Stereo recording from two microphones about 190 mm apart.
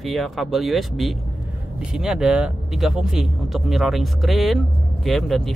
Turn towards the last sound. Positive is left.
turn(degrees=0)  # may be behind; listen again after turning